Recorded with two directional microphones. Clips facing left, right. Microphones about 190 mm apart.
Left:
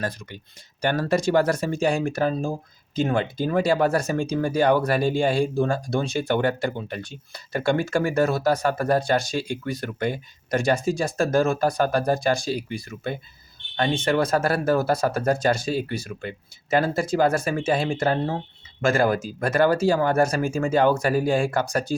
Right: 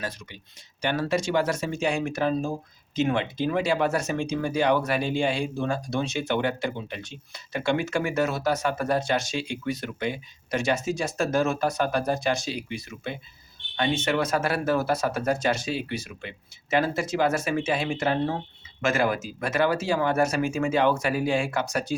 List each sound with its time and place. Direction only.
0.8 s speech: 40° left (ahead or behind)